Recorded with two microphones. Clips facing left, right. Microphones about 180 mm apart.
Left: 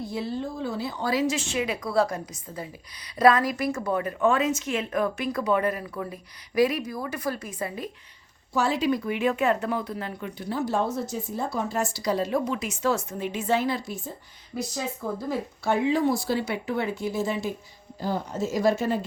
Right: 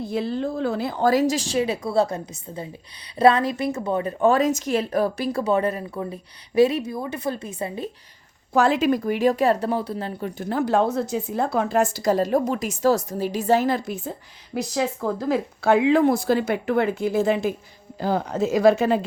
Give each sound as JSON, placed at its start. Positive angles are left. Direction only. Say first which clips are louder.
{"t": 0.1, "sound": "a woman's voice", "louder": "right 8 dB", "side_deg": -65}
{"t": 8.6, "sound": "a woman's voice", "louder": "right 3 dB", "side_deg": -45}
{"t": 10.2, "sound": "a woman's voice", "louder": "right 5 dB", "side_deg": -45}
{"t": 10.8, "sound": "a woman's voice", "louder": "right 6 dB", "side_deg": -65}
{"t": 14.5, "sound": "speech", "louder": "right 6 dB", "side_deg": -85}
{"t": 18.0, "sound": "a woman's voice", "louder": "right 5 dB", "side_deg": -70}